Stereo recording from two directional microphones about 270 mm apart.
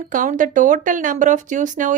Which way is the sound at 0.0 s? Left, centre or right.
Right.